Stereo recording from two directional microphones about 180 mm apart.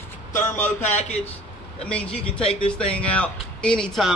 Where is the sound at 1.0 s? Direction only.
35° left (ahead or behind).